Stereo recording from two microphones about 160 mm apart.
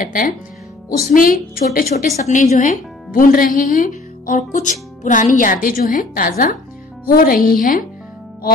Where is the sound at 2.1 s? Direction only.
50° left (ahead or behind).